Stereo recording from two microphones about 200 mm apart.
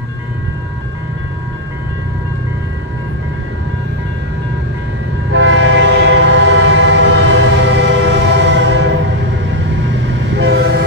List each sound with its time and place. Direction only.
5.3 s train: 65° right (ahead or behind)